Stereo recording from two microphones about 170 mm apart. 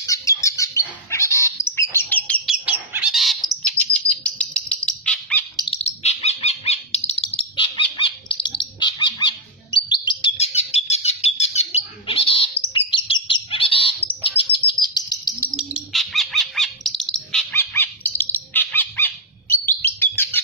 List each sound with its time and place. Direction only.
0.0 s bird: 20° left (ahead or behind)
2.4 s chirp: 5° right (ahead or behind)
4.1 s bird: 5° left (ahead or behind)
5.6 s bird: 35° left (ahead or behind)
15.5 s bird: centre (ahead or behind)